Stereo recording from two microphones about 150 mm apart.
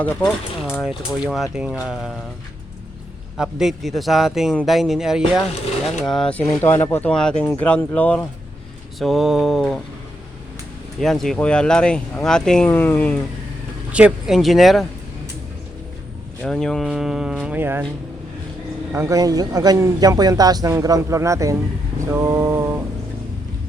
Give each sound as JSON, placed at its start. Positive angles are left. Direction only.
{"t": 0.2, "sound": "speech", "side_deg": 10}
{"t": 0.8, "sound": "speech", "side_deg": 0}
{"t": 3.3, "sound": "speech", "side_deg": -5}
{"t": 9.0, "sound": "speech", "side_deg": 0}
{"t": 11.0, "sound": "speech", "side_deg": 0}
{"t": 13.9, "sound": "speech", "side_deg": -5}
{"t": 16.4, "sound": "speech", "side_deg": 5}
{"t": 18.9, "sound": "a man's voice", "side_deg": -20}
{"t": 22.1, "sound": "mantra", "side_deg": -20}